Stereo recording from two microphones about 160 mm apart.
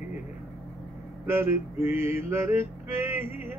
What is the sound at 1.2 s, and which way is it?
Male singing, 15° right (ahead or behind).